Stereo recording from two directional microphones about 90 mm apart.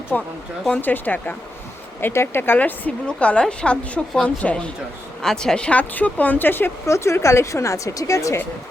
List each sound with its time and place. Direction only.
0.1 s a woman's voice: 15° left (ahead or behind); by 8.4 s 35° left (ahead or behind)